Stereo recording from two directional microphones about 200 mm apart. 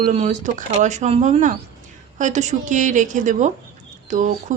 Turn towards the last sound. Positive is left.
turn(degrees=-40)  # may be behind; listen again after turning